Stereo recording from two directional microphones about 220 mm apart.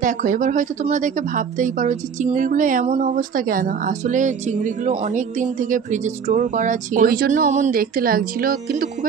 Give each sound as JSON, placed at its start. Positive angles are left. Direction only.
{"t": 0.0, "sound": "speech", "side_deg": -35}